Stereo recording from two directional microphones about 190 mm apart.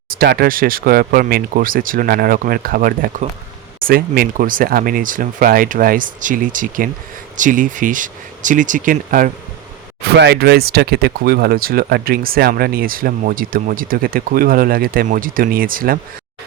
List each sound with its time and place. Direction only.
0.1 s speech: 50° right (ahead or behind)
10.1 s speech: 60° right (ahead or behind)